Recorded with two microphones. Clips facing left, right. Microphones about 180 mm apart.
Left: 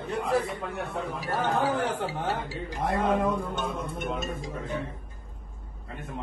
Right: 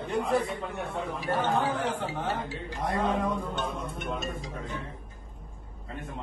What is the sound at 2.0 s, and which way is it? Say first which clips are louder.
Speech: left 1 dB; 40° left (ahead or behind).